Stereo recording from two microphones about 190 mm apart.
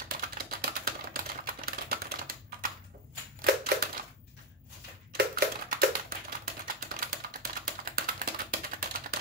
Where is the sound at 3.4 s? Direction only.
55° right (ahead or behind).